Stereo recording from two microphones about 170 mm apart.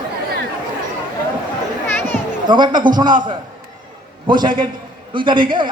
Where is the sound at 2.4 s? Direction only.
25° right (ahead or behind).